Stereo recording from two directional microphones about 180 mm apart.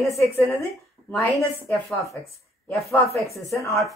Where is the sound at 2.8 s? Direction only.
Centre (ahead or behind).